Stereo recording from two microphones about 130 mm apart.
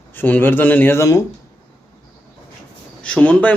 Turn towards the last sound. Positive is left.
turn(degrees=10)  # may be behind; listen again after turning